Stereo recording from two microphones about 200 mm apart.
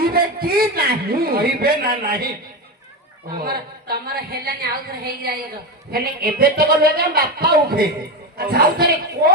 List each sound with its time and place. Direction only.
0.0 s a man's voice: 50° right (ahead or behind)
3.4 s speech: 50° right (ahead or behind)